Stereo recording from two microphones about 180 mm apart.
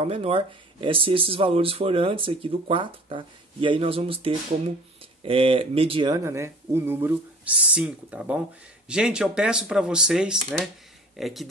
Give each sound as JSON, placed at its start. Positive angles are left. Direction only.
{"t": 0.0, "sound": "speech", "side_deg": -35}